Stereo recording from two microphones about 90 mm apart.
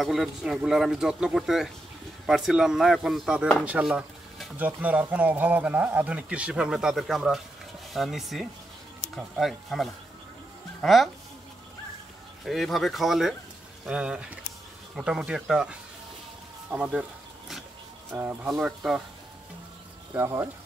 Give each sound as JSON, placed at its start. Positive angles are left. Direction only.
{"t": 0.0, "sound": "speech", "side_deg": 0}
{"t": 4.6, "sound": "a man's voice", "side_deg": -15}
{"t": 12.4, "sound": "a man's voice", "side_deg": 0}
{"t": 18.1, "sound": "speech", "side_deg": -25}
{"t": 18.5, "sound": "a man's voice", "side_deg": -5}
{"t": 20.2, "sound": "speech", "side_deg": -30}